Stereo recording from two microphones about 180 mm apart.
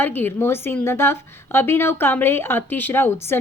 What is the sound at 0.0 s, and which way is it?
A woman's voice, 10° left (ahead or behind).